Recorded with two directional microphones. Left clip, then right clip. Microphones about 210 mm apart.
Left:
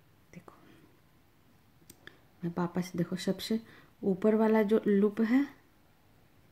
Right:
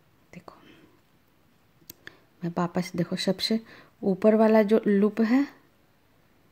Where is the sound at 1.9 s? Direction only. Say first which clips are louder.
Right 6 dB; 40° right (ahead or behind).